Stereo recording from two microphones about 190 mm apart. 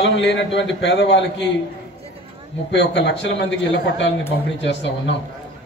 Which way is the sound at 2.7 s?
65° left (ahead or behind).